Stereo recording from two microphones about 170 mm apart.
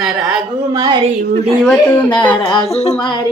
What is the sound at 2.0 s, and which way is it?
Music, 25° left (ahead or behind).